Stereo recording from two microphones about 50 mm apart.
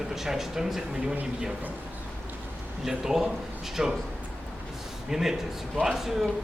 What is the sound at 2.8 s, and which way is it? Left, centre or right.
Speech, centre.